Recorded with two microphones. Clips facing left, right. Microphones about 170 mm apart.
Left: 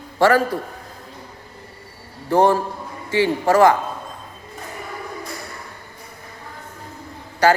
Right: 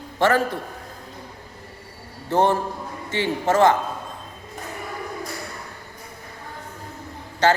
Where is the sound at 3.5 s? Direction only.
20° right (ahead or behind).